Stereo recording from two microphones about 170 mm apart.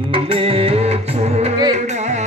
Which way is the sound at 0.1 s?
35° right (ahead or behind).